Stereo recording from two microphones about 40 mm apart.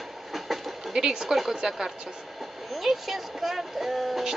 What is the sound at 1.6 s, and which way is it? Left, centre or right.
Speech, centre.